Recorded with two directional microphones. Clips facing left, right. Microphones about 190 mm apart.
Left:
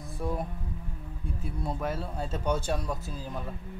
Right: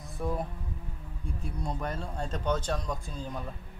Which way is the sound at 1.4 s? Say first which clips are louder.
Left 2 dB; 5° left (ahead or behind).